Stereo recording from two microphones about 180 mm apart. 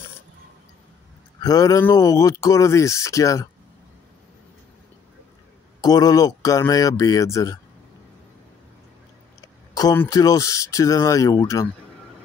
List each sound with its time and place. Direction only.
1.4 s speech: 20° left (ahead or behind)
5.8 s speech: 20° left (ahead or behind)
9.8 s speech: 20° left (ahead or behind)